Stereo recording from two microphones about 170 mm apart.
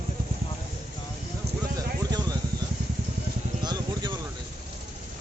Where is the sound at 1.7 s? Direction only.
25° right (ahead or behind).